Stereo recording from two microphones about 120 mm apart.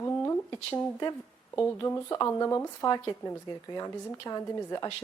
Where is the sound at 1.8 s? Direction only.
25° left (ahead or behind).